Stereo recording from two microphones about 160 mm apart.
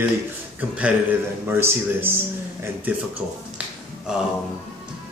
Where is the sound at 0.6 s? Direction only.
10° right (ahead or behind).